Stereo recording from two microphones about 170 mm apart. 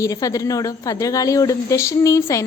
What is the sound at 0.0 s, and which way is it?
Speech, 20° left (ahead or behind).